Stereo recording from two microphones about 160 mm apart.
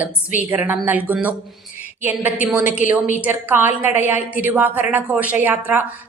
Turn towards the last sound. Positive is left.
turn(degrees=-10)  # may be behind; listen again after turning